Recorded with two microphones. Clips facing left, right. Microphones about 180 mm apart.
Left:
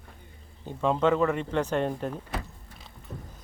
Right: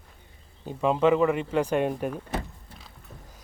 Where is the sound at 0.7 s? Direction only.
10° right (ahead or behind).